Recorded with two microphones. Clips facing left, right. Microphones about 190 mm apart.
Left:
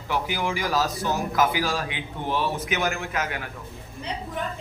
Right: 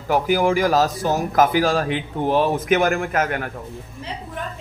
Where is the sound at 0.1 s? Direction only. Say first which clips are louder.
Right 9 dB; 45° right (ahead or behind).